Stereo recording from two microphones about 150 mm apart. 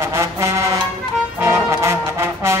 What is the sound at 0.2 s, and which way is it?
Music, 20° right (ahead or behind).